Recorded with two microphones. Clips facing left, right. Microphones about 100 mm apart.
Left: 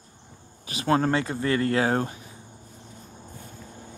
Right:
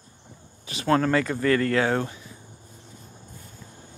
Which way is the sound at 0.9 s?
25° left (ahead or behind).